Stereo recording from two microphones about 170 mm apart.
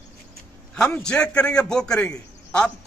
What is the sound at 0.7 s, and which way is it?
A man's voice, 5° left (ahead or behind).